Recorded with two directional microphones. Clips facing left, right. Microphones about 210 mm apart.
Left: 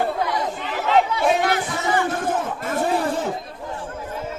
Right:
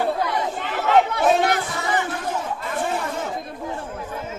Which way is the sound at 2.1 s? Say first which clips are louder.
Left 3 dB; 50° left (ahead or behind).